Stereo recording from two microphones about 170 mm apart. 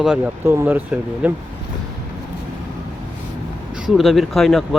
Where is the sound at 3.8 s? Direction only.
Centre (ahead or behind).